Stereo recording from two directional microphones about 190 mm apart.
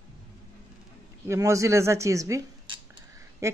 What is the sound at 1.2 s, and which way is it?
Speech, 15° right (ahead or behind).